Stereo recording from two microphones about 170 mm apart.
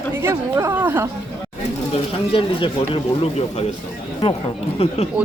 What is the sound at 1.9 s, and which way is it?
Speech, 35° left (ahead or behind).